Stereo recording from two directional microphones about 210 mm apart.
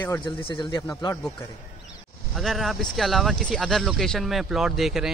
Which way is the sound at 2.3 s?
Centre (ahead or behind).